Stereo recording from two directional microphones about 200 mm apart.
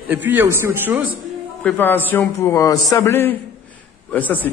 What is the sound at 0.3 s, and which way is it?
Speech, 10° right (ahead or behind).